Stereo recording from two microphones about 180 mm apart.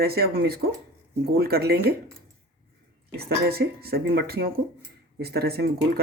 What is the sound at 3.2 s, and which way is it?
Speech, 60° right (ahead or behind).